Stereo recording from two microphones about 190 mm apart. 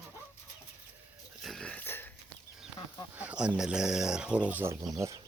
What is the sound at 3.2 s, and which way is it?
Speech, 5° right (ahead or behind).